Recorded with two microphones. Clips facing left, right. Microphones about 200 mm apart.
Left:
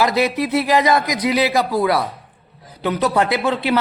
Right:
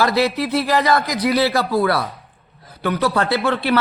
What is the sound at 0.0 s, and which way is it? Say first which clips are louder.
A man's voice: even; 20° left (ahead or behind).